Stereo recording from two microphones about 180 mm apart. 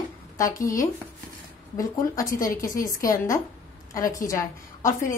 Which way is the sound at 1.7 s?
20° left (ahead or behind).